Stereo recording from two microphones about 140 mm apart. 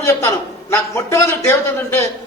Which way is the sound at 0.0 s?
15° left (ahead or behind).